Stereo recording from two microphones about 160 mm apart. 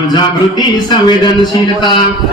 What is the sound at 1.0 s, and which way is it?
Speech, 30° left (ahead or behind).